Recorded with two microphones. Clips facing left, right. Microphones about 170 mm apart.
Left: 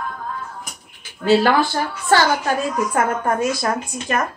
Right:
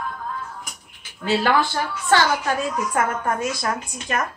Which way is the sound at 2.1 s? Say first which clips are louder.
Left 2 dB; 35° left (ahead or behind).